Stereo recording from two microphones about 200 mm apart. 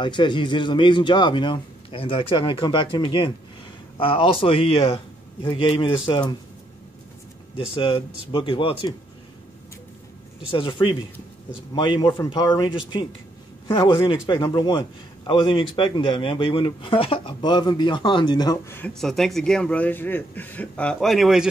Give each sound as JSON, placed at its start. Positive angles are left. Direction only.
{"t": 0.0, "sound": "a man's voice", "side_deg": 25}
{"t": 7.5, "sound": "a man's voice", "side_deg": 25}
{"t": 10.4, "sound": "a man's voice", "side_deg": 25}
{"t": 18.9, "sound": "speech", "side_deg": 0}